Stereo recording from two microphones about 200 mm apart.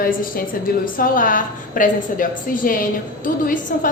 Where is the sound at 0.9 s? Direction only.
45° left (ahead or behind).